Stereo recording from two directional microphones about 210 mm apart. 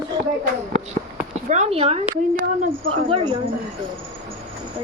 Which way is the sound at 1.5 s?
30° right (ahead or behind).